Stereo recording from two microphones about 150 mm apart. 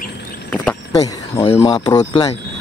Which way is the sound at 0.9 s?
25° left (ahead or behind).